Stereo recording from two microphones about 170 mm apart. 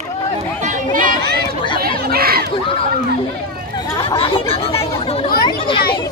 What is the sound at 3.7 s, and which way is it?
Chatter, 30° left (ahead or behind).